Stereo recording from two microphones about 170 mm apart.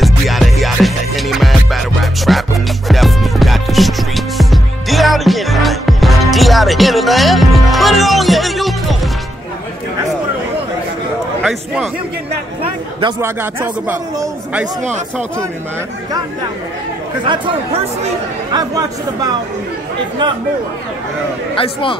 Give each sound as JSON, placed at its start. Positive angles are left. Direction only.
{"t": 0.0, "sound": "music", "side_deg": 0}
{"t": 11.4, "sound": "a sound", "side_deg": 0}
{"t": 13.2, "sound": "speech", "side_deg": -15}
{"t": 17.2, "sound": "speech", "side_deg": -30}